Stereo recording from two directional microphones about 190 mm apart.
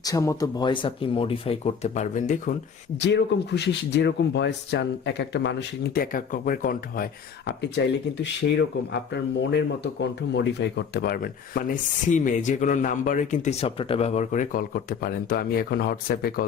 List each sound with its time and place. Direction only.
0.0 s speech: 20° left (ahead or behind); by 2.6 s 40° left (ahead or behind)
3.0 s speech: 65° left (ahead or behind)
7.4 s speech: 65° left (ahead or behind); by 16.5 s 50° left (ahead or behind)